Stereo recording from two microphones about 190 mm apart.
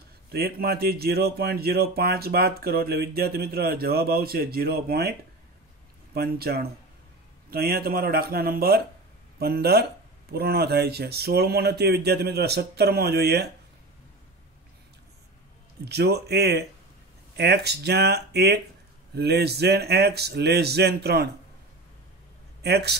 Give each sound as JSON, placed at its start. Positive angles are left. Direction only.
{"t": 0.3, "sound": "speech", "side_deg": -55}
{"t": 6.1, "sound": "speech", "side_deg": -55}
{"t": 15.8, "sound": "speech", "side_deg": -60}
{"t": 22.6, "sound": "speech", "side_deg": -60}